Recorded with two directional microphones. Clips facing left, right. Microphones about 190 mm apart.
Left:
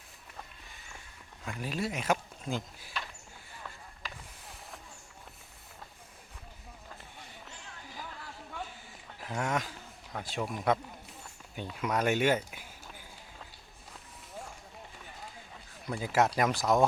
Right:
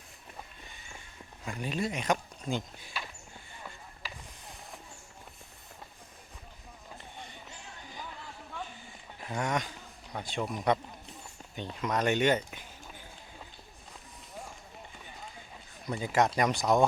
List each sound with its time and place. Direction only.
1.5 s speech: centre (ahead or behind)
4.0 s a sound: 5° right (ahead or behind)
9.2 s speech: 5° left (ahead or behind)
11.5 s speech: 10° left (ahead or behind)
15.9 s speech: centre (ahead or behind)